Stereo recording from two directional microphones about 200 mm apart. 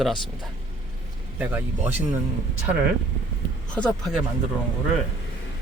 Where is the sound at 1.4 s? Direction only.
10° right (ahead or behind).